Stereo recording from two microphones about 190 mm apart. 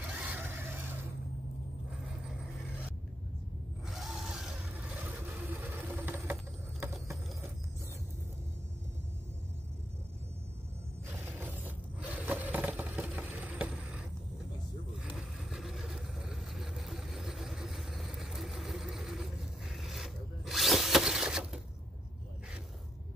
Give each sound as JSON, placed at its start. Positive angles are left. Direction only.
{"t": 0.2, "sound": "vehicle", "side_deg": -10}
{"t": 3.8, "sound": "vehicle", "side_deg": 0}
{"t": 5.9, "sound": "sewing machine", "side_deg": -10}
{"t": 6.8, "sound": "patter", "side_deg": -15}
{"t": 11.6, "sound": "vehicle", "side_deg": -10}
{"t": 15.1, "sound": "vehicle", "side_deg": 0}